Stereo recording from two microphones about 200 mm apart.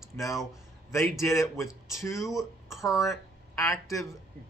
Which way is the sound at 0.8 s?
15° left (ahead or behind).